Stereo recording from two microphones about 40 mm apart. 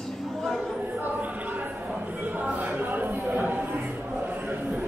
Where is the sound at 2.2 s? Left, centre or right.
Right.